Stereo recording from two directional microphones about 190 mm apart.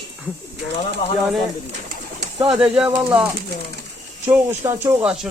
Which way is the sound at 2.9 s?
5° right (ahead or behind).